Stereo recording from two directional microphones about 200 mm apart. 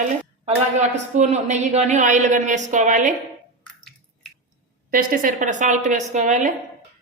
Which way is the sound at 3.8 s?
Centre (ahead or behind).